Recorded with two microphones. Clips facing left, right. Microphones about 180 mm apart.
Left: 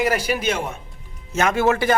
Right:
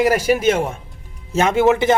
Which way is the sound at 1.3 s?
20° right (ahead or behind).